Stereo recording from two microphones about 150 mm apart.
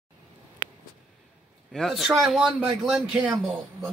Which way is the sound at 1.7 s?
Centre (ahead or behind).